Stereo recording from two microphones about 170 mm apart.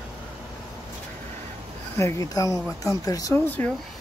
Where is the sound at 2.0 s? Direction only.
20° left (ahead or behind).